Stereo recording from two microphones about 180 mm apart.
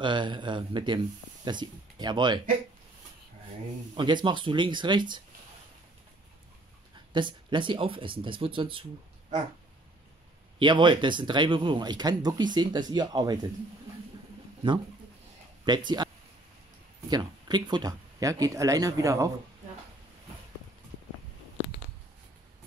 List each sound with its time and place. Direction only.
0.0 s speech: 25° right (ahead or behind)
3.9 s speech: 25° right (ahead or behind)
7.1 s speech: 25° right (ahead or behind)
10.6 s speech: 25° right (ahead or behind)
15.7 s speech: 25° right (ahead or behind)
17.1 s speech: 25° right (ahead or behind)